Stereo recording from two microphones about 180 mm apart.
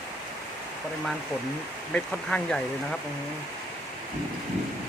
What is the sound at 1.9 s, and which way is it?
Speech, 5° left (ahead or behind).